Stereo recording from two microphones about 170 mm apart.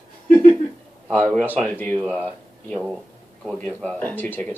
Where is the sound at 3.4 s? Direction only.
5° left (ahead or behind).